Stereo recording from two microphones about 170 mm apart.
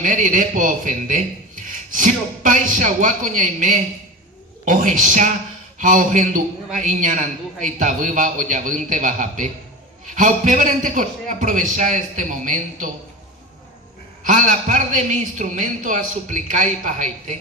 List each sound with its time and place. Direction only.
0.0 s a man's voice: 50° right (ahead or behind)
14.3 s a man's voice: 50° right (ahead or behind)